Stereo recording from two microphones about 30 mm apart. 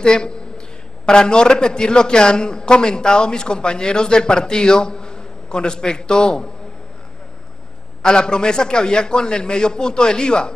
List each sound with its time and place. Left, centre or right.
0.0 s a man's voice: left
8.0 s a man's voice: left